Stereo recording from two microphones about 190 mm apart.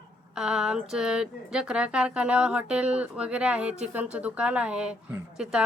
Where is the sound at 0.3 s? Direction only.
5° right (ahead or behind).